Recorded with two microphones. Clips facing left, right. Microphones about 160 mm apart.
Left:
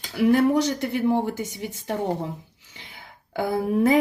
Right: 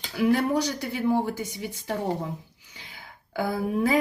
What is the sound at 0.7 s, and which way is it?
Speech, 50° left (ahead or behind).